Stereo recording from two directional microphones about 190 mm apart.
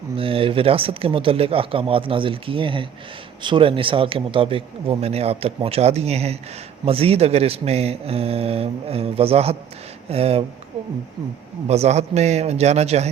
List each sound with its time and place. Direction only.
0.2 s a man's voice: 30° right (ahead or behind)
11.7 s a man's voice: 35° right (ahead or behind)